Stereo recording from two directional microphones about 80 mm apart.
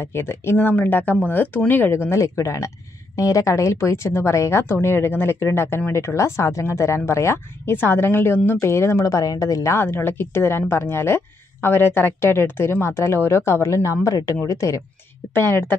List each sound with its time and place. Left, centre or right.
0.0 s a woman's voice: left
9.0 s a woman's voice: left
15.3 s speech: left